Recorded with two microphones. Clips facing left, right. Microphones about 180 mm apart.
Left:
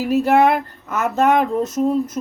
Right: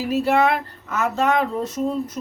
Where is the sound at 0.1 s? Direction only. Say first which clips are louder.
Left 4 dB; 50° left (ahead or behind).